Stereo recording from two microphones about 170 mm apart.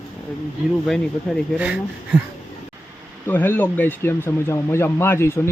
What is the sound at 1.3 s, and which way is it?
Speech, centre (ahead or behind).